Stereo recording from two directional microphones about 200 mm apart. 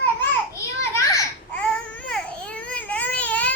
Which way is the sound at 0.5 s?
15° left (ahead or behind).